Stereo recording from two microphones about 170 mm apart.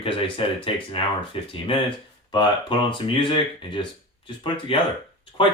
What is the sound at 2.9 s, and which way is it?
Speech, 30° left (ahead or behind).